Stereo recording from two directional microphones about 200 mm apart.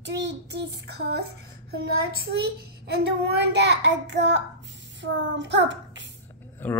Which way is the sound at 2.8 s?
55° right (ahead or behind).